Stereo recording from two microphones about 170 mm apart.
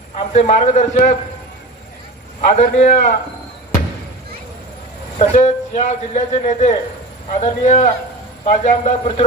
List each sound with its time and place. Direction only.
0.3 s a man's voice: 40° left (ahead or behind)
2.4 s a man's voice: 45° left (ahead or behind)
5.2 s a man's voice: 40° left (ahead or behind)